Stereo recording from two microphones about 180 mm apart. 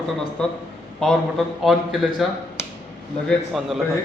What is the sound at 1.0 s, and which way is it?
A man's voice, 5° left (ahead or behind).